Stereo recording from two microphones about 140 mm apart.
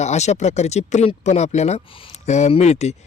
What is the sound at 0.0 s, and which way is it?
Speech, 55° left (ahead or behind).